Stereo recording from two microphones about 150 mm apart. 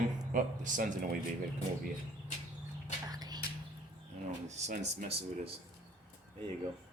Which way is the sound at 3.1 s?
25° right (ahead or behind).